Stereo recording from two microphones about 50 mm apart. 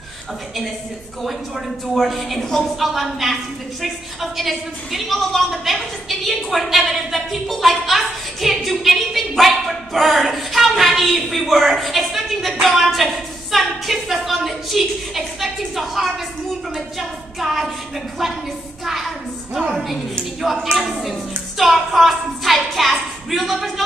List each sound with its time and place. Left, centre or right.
2.0 s a woman's voice: centre
17.4 s a woman's voice: centre
19.7 s a woman's voice: centre